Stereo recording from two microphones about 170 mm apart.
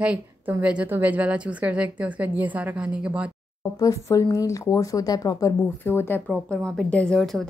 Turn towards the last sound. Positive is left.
turn(degrees=0)  # may be behind; listen again after turning